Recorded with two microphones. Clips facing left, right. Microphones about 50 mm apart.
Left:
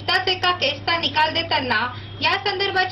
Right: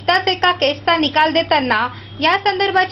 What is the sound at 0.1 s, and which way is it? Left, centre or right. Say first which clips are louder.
A woman's voice: right 5 dB; right.